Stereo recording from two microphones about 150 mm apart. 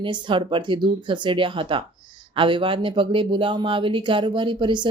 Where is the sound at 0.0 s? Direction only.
35° right (ahead or behind).